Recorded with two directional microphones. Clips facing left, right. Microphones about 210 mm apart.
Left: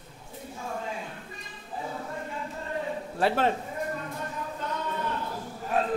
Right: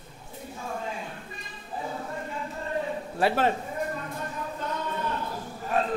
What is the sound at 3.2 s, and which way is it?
Speech, 5° right (ahead or behind).